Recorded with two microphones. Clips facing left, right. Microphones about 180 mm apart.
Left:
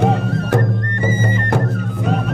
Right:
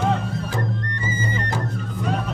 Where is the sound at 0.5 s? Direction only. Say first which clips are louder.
Left 8 dB; 55° left (ahead or behind).